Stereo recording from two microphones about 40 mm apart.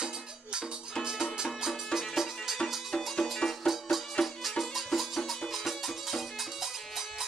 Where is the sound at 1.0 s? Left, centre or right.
Centre.